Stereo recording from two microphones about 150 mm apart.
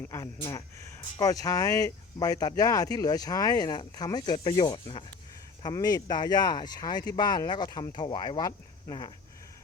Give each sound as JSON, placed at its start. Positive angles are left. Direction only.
{"t": 0.0, "sound": "speech", "side_deg": 20}